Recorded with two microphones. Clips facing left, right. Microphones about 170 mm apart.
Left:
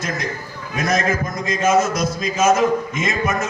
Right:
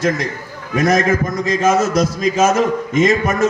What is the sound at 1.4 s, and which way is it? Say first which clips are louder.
A man's voice: right 1 dB; 35° right (ahead or behind).